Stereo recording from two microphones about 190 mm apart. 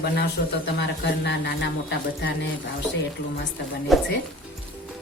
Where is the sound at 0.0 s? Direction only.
65° left (ahead or behind).